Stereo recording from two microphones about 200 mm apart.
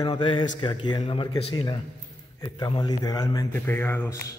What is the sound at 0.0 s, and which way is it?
A man's voice, 25° left (ahead or behind).